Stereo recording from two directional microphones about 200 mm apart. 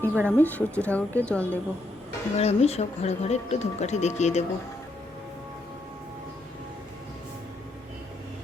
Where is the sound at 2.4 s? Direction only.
30° left (ahead or behind).